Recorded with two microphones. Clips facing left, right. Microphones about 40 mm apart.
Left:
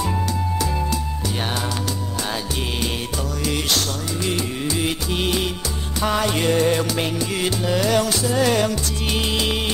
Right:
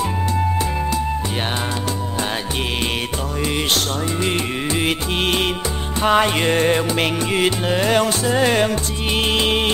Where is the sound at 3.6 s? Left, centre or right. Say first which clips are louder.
Right 3 dB; right.